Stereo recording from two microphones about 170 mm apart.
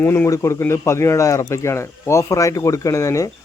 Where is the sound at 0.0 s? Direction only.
10° left (ahead or behind).